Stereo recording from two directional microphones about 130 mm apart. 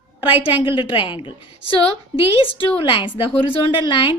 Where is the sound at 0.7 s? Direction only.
40° left (ahead or behind).